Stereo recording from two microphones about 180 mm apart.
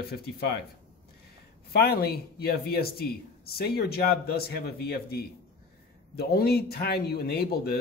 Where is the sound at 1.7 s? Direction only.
60° left (ahead or behind).